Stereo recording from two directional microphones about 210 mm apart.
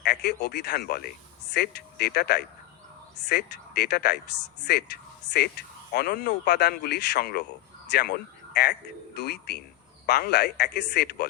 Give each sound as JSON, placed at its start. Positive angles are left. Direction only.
{"t": 0.0, "sound": "speech", "side_deg": 55}